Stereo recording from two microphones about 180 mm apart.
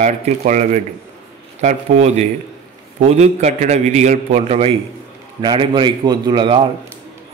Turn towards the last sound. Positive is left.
turn(degrees=-25)  # may be behind; listen again after turning